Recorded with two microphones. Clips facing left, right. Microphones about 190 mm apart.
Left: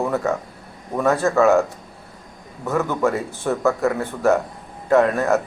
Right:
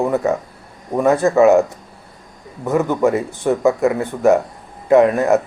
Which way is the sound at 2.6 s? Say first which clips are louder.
Right 4 dB; 15° right (ahead or behind).